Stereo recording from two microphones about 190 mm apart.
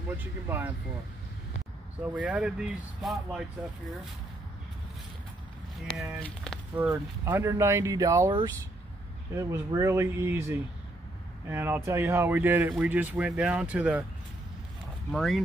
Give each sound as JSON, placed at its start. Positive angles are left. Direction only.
{"t": 0.2, "sound": "speech", "side_deg": -10}
{"t": 2.0, "sound": "speech", "side_deg": -5}
{"t": 5.9, "sound": "speech", "side_deg": 0}
{"t": 6.9, "sound": "speech", "side_deg": -10}
{"t": 15.0, "sound": "speech", "side_deg": 0}